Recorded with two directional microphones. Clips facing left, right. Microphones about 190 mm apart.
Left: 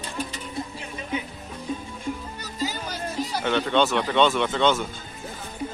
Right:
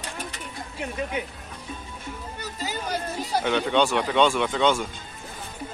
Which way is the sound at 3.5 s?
10° right (ahead or behind).